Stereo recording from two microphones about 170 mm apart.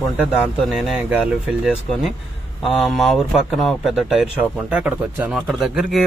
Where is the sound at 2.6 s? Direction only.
Centre (ahead or behind).